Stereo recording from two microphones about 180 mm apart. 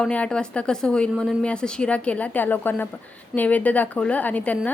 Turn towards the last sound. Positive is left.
turn(degrees=10)  # may be behind; listen again after turning